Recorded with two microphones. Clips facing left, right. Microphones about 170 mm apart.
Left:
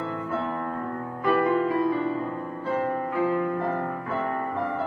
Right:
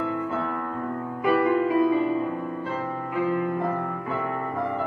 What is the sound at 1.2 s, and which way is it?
Music, 15° right (ahead or behind).